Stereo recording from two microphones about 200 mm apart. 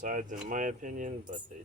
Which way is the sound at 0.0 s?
40° right (ahead or behind).